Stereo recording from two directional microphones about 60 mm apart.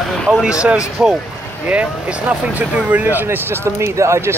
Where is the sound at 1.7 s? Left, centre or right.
Centre.